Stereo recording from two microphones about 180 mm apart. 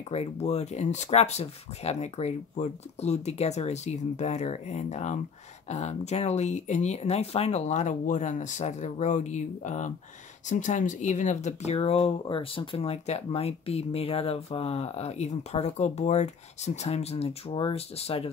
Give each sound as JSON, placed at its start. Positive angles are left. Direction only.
{"t": 0.1, "sound": "speech", "side_deg": 35}